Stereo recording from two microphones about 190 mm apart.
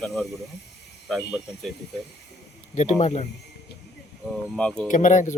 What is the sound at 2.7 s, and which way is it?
Speech, 35° left (ahead or behind).